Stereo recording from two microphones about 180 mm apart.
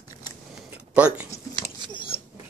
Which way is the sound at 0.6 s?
5° right (ahead or behind).